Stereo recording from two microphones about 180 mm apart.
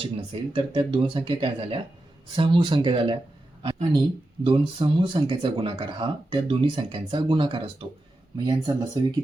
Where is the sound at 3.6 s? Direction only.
30° right (ahead or behind).